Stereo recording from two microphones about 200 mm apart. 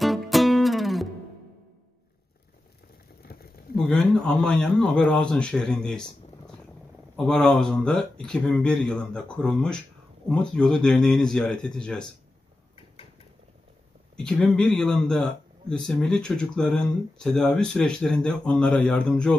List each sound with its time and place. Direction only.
0.0 s music: centre (ahead or behind)
3.3 s a sound: 50° left (ahead or behind)
3.7 s speech: centre (ahead or behind)
7.2 s speech: centre (ahead or behind)
14.1 s speech: 5° left (ahead or behind)